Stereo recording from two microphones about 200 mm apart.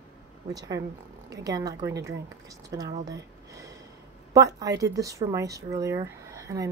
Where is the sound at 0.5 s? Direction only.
15° right (ahead or behind).